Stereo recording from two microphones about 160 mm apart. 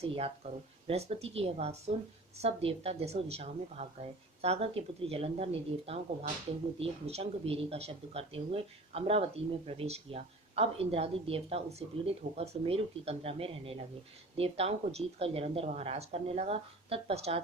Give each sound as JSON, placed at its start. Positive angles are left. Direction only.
{"t": 0.0, "sound": "speech", "side_deg": -40}